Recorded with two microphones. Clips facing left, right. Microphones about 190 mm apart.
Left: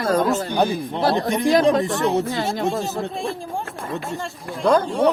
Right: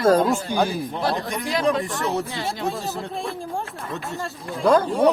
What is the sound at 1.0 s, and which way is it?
Speech, 30° left (ahead or behind).